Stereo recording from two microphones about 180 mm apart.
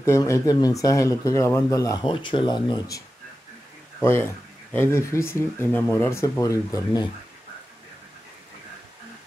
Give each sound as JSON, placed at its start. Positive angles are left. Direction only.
{"t": 0.0, "sound": "speech", "side_deg": 15}
{"t": 4.0, "sound": "speech", "side_deg": 15}